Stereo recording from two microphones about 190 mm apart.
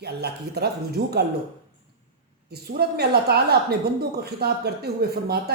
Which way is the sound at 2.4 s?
55° right (ahead or behind).